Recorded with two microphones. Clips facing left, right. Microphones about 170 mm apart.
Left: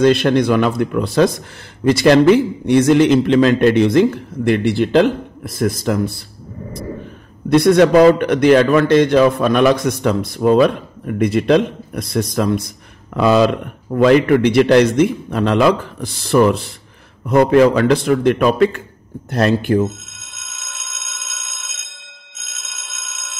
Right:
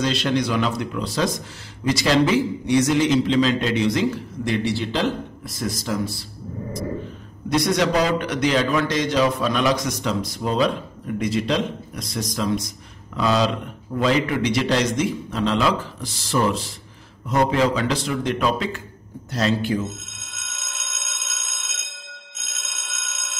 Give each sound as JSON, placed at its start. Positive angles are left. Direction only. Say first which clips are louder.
{"t": 0.0, "sound": "a man's voice", "louder": "left 9 dB", "side_deg": 55}
{"t": 7.4, "sound": "a man's voice", "louder": "left 9 dB", "side_deg": 55}
{"t": 20.1, "sound": "telephone bell ringing", "louder": "even", "side_deg": 0}